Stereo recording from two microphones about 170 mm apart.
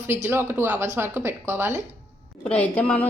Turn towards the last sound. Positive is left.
turn(degrees=5)  # may be behind; listen again after turning